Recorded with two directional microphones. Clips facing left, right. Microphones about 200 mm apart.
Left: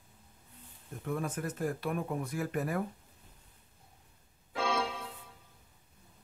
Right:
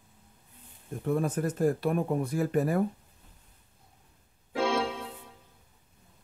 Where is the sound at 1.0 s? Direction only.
35° right (ahead or behind).